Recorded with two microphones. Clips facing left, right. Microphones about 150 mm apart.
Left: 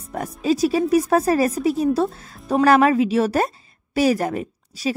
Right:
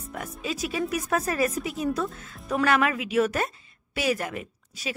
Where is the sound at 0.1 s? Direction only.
35° left (ahead or behind).